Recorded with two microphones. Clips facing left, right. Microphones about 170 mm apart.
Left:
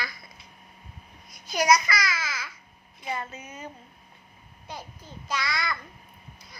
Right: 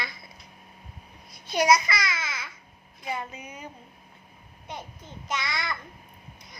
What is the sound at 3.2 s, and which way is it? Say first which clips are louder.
Speech: even; 15° right (ahead or behind).